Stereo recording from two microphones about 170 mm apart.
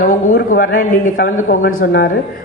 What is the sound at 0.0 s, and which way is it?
A man's voice, 50° left (ahead or behind).